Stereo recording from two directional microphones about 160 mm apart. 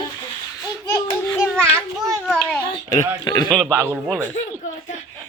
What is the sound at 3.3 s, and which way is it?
Speech, 25° left (ahead or behind).